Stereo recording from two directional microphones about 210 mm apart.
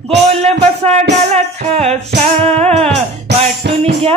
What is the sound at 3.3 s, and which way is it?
Music, 55° right (ahead or behind).